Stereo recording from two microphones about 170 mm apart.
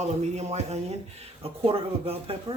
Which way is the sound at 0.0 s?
40° right (ahead or behind).